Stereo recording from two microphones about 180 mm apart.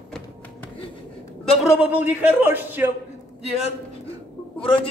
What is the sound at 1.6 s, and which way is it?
A man's voice, 10° right (ahead or behind).